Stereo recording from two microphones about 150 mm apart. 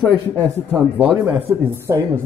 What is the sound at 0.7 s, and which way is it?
Speech, 10° right (ahead or behind).